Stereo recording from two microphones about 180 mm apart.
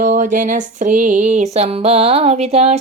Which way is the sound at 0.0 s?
40° right (ahead or behind).